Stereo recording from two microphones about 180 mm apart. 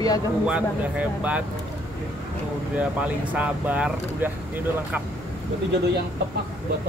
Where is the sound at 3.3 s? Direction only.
5° right (ahead or behind).